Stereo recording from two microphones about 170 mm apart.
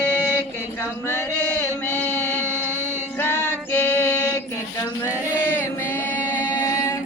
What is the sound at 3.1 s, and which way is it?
Female singing, 15° left (ahead or behind).